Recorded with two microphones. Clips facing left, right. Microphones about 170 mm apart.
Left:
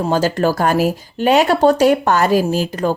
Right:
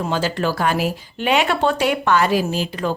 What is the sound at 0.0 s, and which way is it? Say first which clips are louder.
Speech: left 5 dB; 40° left (ahead or behind).